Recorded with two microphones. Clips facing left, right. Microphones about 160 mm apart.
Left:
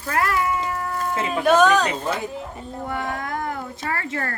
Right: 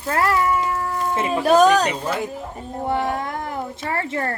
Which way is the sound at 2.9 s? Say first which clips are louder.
Right 5 dB; 25° right (ahead or behind).